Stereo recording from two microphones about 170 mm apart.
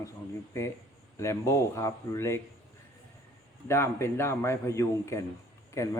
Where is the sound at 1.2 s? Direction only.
15° left (ahead or behind).